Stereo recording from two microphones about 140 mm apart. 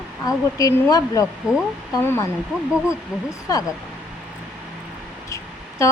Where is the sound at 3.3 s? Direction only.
25° left (ahead or behind).